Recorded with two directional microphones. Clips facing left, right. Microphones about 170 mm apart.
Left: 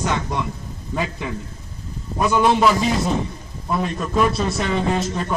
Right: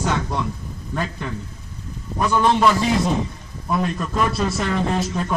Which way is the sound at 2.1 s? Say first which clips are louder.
Left 1 dB; 10° left (ahead or behind).